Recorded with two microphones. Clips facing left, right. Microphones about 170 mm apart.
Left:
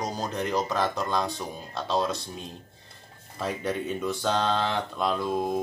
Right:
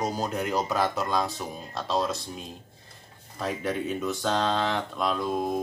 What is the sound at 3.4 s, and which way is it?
Speech, centre (ahead or behind).